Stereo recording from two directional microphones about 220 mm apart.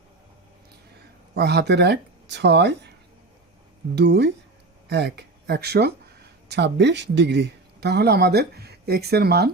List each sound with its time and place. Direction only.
1.4 s speech: 50° right (ahead or behind)
3.9 s speech: 50° right (ahead or behind)